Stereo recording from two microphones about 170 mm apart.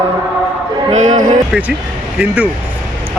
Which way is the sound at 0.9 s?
45° right (ahead or behind).